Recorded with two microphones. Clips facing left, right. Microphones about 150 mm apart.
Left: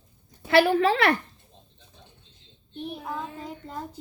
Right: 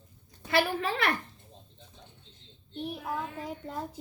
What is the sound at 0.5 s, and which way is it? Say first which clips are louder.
Speech: left 8 dB; 85° left.